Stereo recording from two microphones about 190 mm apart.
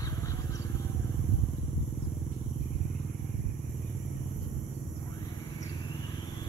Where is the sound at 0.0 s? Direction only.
15° left (ahead or behind).